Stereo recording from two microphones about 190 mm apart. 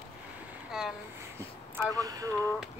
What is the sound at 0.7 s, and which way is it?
Speech, 5° right (ahead or behind).